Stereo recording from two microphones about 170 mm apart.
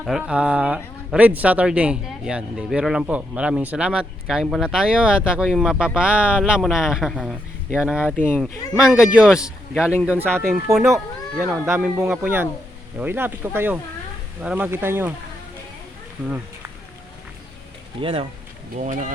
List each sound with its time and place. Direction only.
0.0 s speech: 5° right (ahead or behind)
8.1 s speech: 10° left (ahead or behind)
8.8 s speech: 5° right (ahead or behind)
10.7 s speech: centre (ahead or behind)
11.4 s speech: 10° right (ahead or behind)
18.0 s speech: 35° right (ahead or behind)
18.7 s speech: 50° right (ahead or behind)